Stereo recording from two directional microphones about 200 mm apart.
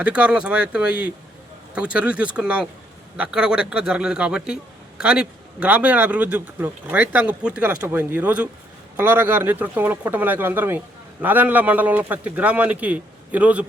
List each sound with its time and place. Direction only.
0.0 s speech: 5° right (ahead or behind)